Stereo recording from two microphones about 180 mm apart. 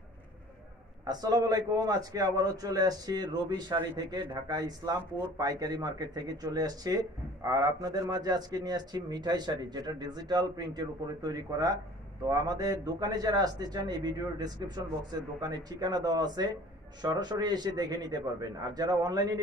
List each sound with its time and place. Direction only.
1.0 s speech: 20° right (ahead or behind)